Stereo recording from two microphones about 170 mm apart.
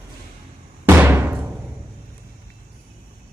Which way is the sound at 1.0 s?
10° right (ahead or behind).